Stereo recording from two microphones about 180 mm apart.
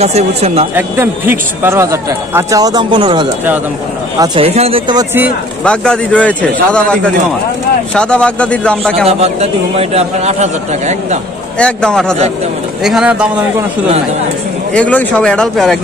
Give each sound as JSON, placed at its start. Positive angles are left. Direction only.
{"t": 0.0, "sound": "speech", "side_deg": -35}
{"t": 0.7, "sound": "a man's voice", "side_deg": -10}
{"t": 5.6, "sound": "speech", "side_deg": 5}
{"t": 9.0, "sound": "speech", "side_deg": -35}
{"t": 11.5, "sound": "speech", "side_deg": 5}
{"t": 14.7, "sound": "speech", "side_deg": 5}